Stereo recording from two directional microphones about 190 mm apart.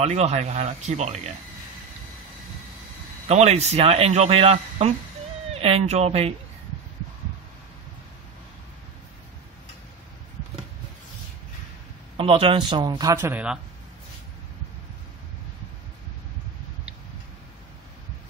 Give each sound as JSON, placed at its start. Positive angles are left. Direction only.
{"t": 0.0, "sound": "speech", "side_deg": -35}
{"t": 3.3, "sound": "speech", "side_deg": -35}
{"t": 12.2, "sound": "speech", "side_deg": -30}